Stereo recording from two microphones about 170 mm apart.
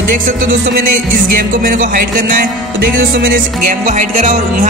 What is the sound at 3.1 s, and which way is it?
A man's voice, 55° right (ahead or behind).